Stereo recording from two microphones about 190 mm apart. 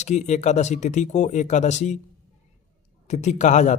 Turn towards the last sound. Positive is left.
turn(degrees=40)  # may be behind; listen again after turning